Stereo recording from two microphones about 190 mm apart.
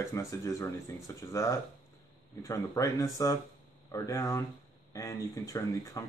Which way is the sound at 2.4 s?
15° left (ahead or behind).